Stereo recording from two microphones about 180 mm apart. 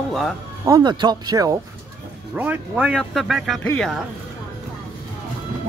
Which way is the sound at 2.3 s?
10° right (ahead or behind).